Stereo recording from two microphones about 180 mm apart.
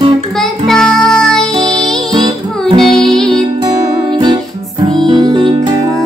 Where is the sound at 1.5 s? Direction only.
25° right (ahead or behind).